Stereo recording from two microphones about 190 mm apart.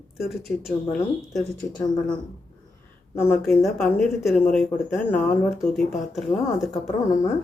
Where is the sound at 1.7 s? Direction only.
20° left (ahead or behind).